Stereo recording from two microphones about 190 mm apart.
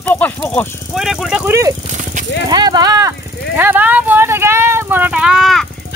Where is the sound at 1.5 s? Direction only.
15° right (ahead or behind).